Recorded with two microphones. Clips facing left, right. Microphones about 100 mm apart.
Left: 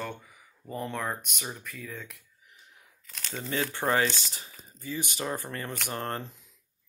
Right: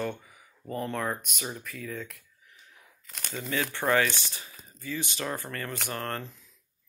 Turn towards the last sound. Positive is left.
turn(degrees=20)  # may be behind; listen again after turning